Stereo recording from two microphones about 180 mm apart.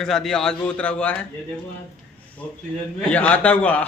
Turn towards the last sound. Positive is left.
turn(degrees=10)  # may be behind; listen again after turning